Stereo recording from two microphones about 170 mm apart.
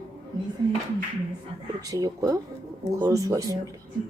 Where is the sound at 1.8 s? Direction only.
20° right (ahead or behind).